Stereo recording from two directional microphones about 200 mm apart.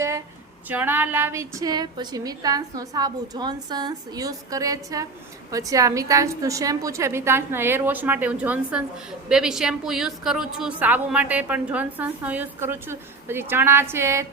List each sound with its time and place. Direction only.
0.7 s a woman's voice: 10° right (ahead or behind)